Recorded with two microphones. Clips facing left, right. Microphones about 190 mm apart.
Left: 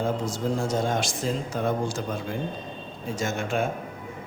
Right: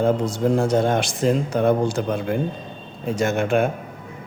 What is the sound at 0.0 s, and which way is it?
A man's voice, 60° right (ahead or behind).